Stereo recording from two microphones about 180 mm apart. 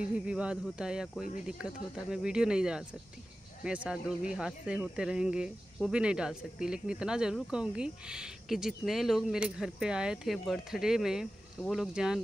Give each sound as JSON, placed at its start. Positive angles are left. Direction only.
{"t": 0.1, "sound": "speech", "side_deg": -5}